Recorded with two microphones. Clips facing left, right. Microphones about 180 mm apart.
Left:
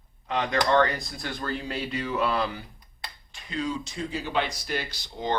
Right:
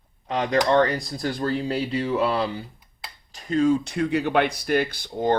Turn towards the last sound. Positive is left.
turn(degrees=-55)  # may be behind; listen again after turning